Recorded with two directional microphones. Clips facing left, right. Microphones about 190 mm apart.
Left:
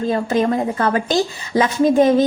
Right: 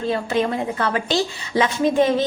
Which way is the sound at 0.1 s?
40° left (ahead or behind).